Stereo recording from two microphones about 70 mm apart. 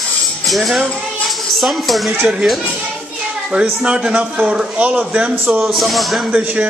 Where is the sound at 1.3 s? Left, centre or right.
Centre.